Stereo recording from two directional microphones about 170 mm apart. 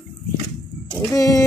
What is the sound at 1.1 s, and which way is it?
Speech, 20° left (ahead or behind).